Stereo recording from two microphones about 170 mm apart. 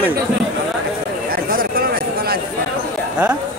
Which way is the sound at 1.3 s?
60° right (ahead or behind).